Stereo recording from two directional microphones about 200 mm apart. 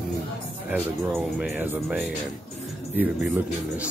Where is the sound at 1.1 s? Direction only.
5° right (ahead or behind).